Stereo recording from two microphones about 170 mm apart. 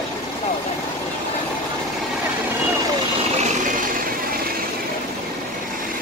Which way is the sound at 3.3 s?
50° right (ahead or behind).